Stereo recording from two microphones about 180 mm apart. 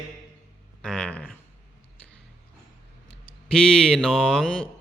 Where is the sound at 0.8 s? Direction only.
5° left (ahead or behind).